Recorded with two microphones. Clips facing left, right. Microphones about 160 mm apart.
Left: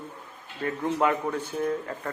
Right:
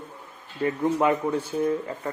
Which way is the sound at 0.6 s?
20° right (ahead or behind).